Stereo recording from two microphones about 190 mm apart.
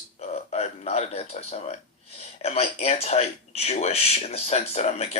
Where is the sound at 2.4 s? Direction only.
35° left (ahead or behind).